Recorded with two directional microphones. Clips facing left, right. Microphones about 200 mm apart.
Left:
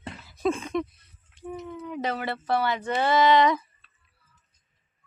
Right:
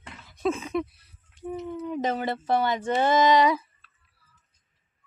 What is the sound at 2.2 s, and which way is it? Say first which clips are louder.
Speech: even; 15° right (ahead or behind).